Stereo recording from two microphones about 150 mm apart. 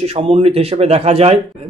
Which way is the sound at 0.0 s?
40° right (ahead or behind).